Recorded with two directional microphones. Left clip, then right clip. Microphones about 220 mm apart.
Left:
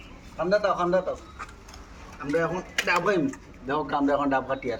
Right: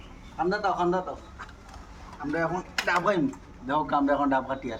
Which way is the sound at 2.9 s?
20° right (ahead or behind).